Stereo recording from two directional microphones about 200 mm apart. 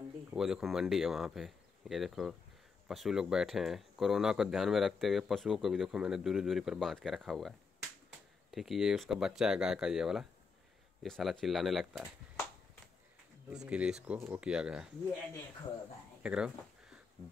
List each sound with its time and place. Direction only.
0.3 s speech: centre (ahead or behind)
13.5 s speech: 5° right (ahead or behind)
16.2 s a sound: 5° right (ahead or behind)